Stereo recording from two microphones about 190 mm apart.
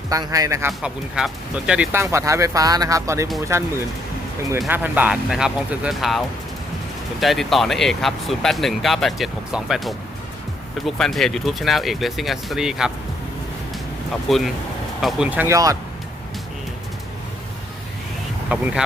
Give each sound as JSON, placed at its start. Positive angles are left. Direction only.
{"t": 0.1, "sound": "speech", "side_deg": -20}
{"t": 0.7, "sound": "speech", "side_deg": -5}
{"t": 4.7, "sound": "speech", "side_deg": -10}
{"t": 14.3, "sound": "speech", "side_deg": 0}
{"t": 18.5, "sound": "speech", "side_deg": -5}